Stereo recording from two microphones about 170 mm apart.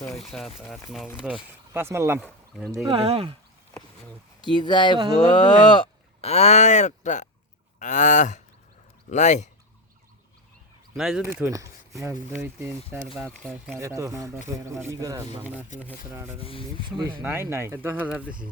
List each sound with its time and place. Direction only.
0.0 s speech: centre (ahead or behind); by 2.2 s 15° right (ahead or behind)
2.2 s speech: centre (ahead or behind)
2.7 s speech: 25° right (ahead or behind)
4.5 s speech: 25° left (ahead or behind); by 7.3 s 45° left (ahead or behind)
7.8 s a sound: 45° left (ahead or behind)
10.9 s speech: 5° right (ahead or behind)
11.4 s speech: 15° right (ahead or behind)
13.4 s speech: 5° left (ahead or behind)
13.7 s speech: 15° right (ahead or behind)
15.7 s a sound: 45° left (ahead or behind)
16.1 s speech: 10° right (ahead or behind)
16.4 s speech: 30° left (ahead or behind)
17.0 s speech: 25° right (ahead or behind)
17.2 s speech: 15° right (ahead or behind)